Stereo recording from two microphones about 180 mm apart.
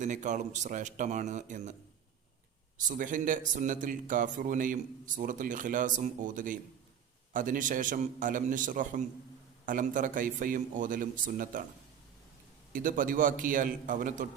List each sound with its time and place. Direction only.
0.0 s speech: 45° right (ahead or behind)
2.7 s speech: 45° right (ahead or behind)
12.7 s speech: 50° right (ahead or behind)